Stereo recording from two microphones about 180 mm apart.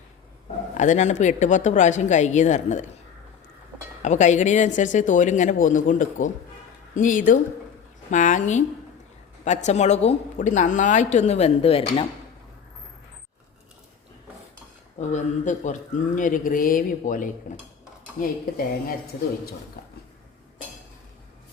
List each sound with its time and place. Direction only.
0.7 s a woman's voice: 45° left (ahead or behind)
4.0 s a woman's voice: 40° left (ahead or behind)
15.0 s a woman's voice: 40° left (ahead or behind)
19.8 s a sound: 65° left (ahead or behind)